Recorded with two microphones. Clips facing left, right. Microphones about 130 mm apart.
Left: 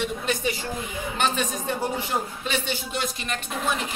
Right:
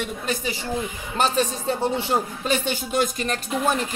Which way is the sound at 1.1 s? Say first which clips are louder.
Right 4 dB; 35° right (ahead or behind).